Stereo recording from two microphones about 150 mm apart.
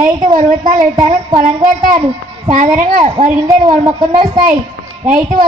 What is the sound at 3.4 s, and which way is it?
Speech, 25° right (ahead or behind).